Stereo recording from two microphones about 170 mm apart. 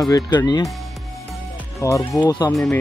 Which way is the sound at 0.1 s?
25° left (ahead or behind).